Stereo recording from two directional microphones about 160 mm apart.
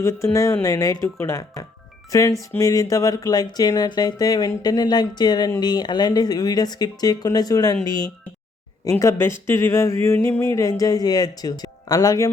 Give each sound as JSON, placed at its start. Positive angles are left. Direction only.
{"t": 0.0, "sound": "speech", "side_deg": 20}
{"t": 9.5, "sound": "a sound", "side_deg": 15}
{"t": 10.2, "sound": "speech", "side_deg": 15}